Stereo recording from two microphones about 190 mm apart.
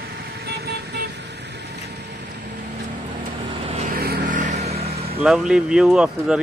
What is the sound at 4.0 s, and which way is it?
Vehicle, 50° right (ahead or behind).